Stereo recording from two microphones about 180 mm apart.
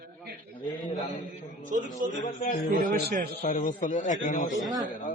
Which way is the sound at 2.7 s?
45° right (ahead or behind).